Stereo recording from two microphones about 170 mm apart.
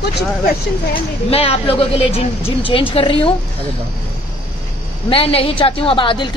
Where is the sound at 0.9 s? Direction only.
35° left (ahead or behind).